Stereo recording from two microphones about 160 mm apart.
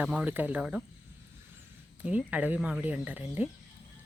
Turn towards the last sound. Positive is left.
turn(degrees=-10)  # may be behind; listen again after turning